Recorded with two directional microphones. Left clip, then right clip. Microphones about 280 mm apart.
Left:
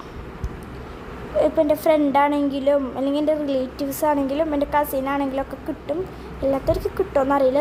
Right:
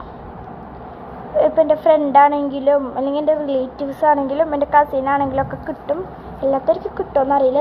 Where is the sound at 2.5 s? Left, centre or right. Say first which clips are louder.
Right 4 dB; centre.